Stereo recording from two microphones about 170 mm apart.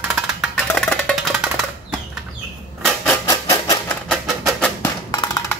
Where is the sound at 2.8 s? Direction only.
10° left (ahead or behind).